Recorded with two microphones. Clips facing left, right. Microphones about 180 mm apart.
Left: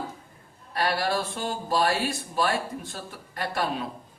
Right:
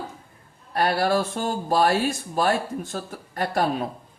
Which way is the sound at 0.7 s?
45° right (ahead or behind).